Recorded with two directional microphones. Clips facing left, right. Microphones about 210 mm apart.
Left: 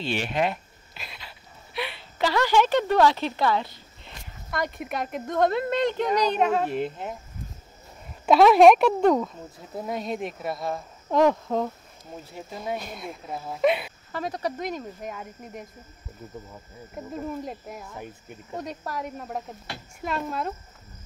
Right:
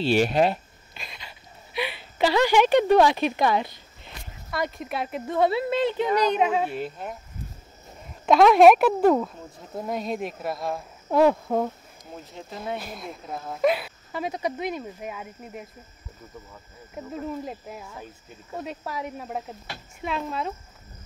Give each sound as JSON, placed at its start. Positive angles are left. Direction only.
{"t": 0.0, "sound": "speech", "side_deg": -40}
{"t": 0.9, "sound": "a sound", "side_deg": 5}
{"t": 2.1, "sound": "speech", "side_deg": -15}
{"t": 4.0, "sound": "a sound", "side_deg": -5}
{"t": 4.7, "sound": "speech", "side_deg": 0}
{"t": 6.8, "sound": "speech", "side_deg": 20}
{"t": 8.3, "sound": "speech", "side_deg": 0}
{"t": 12.3, "sound": "speech", "side_deg": 10}
{"t": 14.1, "sound": "speech", "side_deg": -10}
{"t": 16.9, "sound": "speech", "side_deg": 0}
{"t": 17.9, "sound": "speech", "side_deg": 15}
{"t": 18.6, "sound": "speech", "side_deg": -10}